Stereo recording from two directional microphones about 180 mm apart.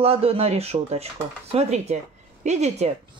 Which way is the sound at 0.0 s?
30° right (ahead or behind).